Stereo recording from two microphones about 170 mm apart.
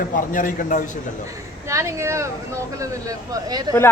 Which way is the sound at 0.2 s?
50° left (ahead or behind).